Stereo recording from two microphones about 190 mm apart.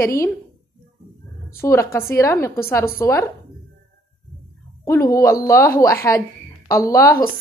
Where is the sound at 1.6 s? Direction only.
15° left (ahead or behind).